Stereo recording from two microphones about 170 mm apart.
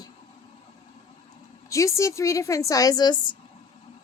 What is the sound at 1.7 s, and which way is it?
A woman's voice, 20° left (ahead or behind).